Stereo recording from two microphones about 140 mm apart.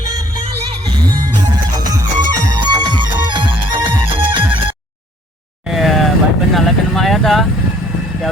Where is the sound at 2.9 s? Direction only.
35° right (ahead or behind).